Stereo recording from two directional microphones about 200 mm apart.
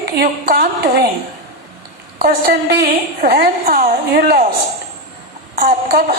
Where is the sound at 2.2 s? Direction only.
50° right (ahead or behind).